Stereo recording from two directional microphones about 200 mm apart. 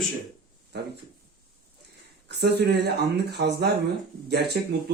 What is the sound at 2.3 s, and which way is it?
Speech, 55° right (ahead or behind).